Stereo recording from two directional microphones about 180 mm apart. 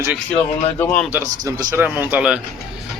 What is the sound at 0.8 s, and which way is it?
Speech, 10° left (ahead or behind).